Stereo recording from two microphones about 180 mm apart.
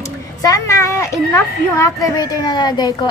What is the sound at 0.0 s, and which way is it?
A woman's voice, 20° left (ahead or behind).